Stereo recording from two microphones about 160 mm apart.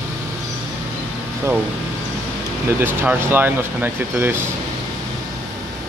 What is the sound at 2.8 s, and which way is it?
Speech, 10° right (ahead or behind).